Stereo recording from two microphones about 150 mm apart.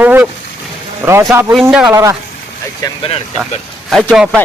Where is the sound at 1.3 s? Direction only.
15° right (ahead or behind).